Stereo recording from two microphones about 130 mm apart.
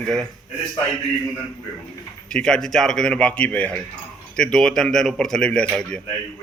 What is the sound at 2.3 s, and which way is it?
A man's voice, 5° left (ahead or behind).